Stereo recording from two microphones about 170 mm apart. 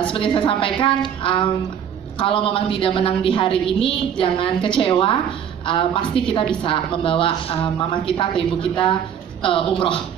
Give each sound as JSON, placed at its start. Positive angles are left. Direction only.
{"t": 0.0, "sound": "a woman's voice", "side_deg": 30}